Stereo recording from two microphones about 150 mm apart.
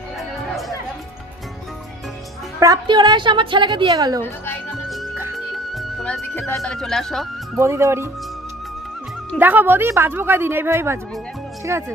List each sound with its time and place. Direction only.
2.6 s a woman's voice: 25° right (ahead or behind)
5.3 s music: centre (ahead or behind)
6.3 s speech: 15° left (ahead or behind)
6.6 s speech: 5° left (ahead or behind)
7.5 s a woman's voice: 20° right (ahead or behind)
9.4 s a woman's voice: 10° right (ahead or behind)